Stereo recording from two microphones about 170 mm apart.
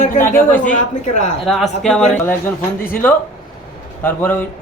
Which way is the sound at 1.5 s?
Centre (ahead or behind).